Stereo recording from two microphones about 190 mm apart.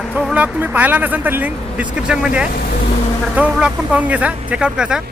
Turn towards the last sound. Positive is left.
turn(degrees=-5)  # may be behind; listen again after turning